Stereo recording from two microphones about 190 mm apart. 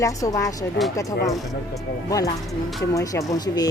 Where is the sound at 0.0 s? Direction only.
15° left (ahead or behind).